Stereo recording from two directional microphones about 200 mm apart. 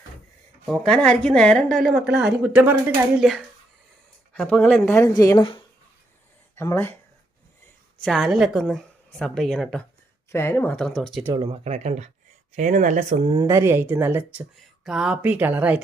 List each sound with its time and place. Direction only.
0.7 s a woman's voice: 5° left (ahead or behind)
8.0 s a woman's voice: centre (ahead or behind)
11.3 s speech: 35° right (ahead or behind)
13.4 s speech: 15° right (ahead or behind)